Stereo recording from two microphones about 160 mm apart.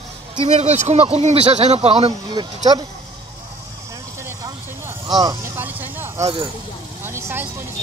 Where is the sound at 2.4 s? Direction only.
25° right (ahead or behind).